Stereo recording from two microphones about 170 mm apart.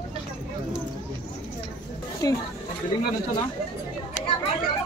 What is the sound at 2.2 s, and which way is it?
Speech, 20° left (ahead or behind).